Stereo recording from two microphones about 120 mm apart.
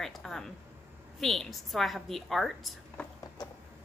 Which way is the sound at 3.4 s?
35° left (ahead or behind).